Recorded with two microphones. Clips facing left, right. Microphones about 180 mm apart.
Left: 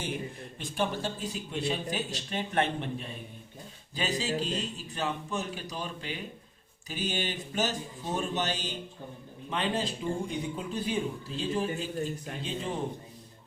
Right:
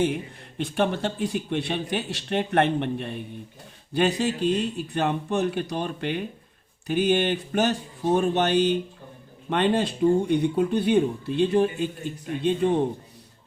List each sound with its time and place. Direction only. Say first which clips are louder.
0.6 s a man's voice: right 7 dB; 65° right (ahead or behind)